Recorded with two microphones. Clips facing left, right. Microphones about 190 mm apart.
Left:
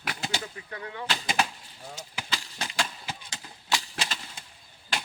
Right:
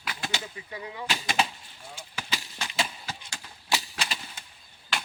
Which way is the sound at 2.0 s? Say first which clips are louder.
Left 3 dB; 40° left (ahead or behind).